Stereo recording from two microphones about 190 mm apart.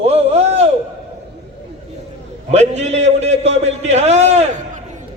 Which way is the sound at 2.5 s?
35° right (ahead or behind).